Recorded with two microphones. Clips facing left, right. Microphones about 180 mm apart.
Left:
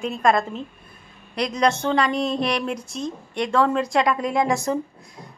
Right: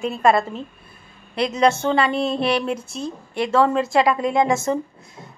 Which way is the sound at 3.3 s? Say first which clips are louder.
Right 2 dB; 5° right (ahead or behind).